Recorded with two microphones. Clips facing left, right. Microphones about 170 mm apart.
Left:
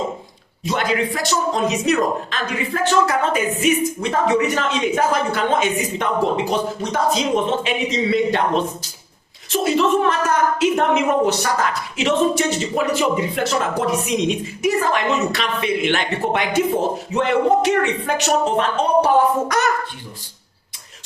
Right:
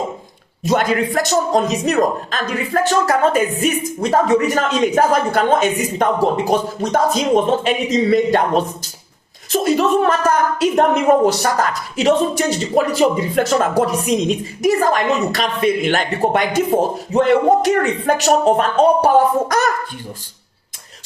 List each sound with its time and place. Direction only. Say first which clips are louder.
0.6 s speech: right 4 dB; 45° right (ahead or behind)